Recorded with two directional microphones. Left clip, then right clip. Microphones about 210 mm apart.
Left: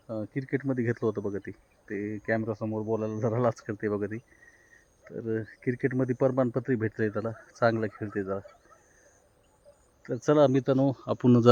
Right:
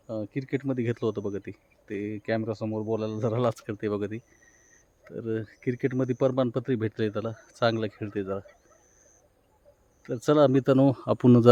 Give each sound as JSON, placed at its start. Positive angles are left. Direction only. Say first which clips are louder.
{"t": 0.3, "sound": "speech", "louder": "even", "side_deg": -15}
{"t": 1.0, "sound": "speech", "louder": "even", "side_deg": 0}
{"t": 1.3, "sound": "speech", "louder": "right 1 dB", "side_deg": -10}
{"t": 10.1, "sound": "speech", "louder": "right 1 dB", "side_deg": -20}
{"t": 10.5, "sound": "speech", "louder": "right 4 dB", "side_deg": -45}